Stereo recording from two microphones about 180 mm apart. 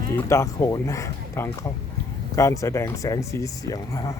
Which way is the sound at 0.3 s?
15° left (ahead or behind).